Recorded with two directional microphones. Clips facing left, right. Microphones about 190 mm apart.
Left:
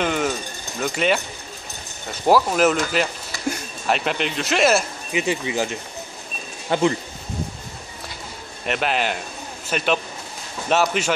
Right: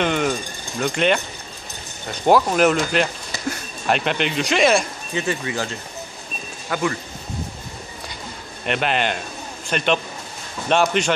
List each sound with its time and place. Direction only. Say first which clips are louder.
0.0 s speech: right 2 dB; 5° left (ahead or behind)
5.2 s speech: left 2 dB; 15° left (ahead or behind)
8.6 s speech: right 1 dB; centre (ahead or behind)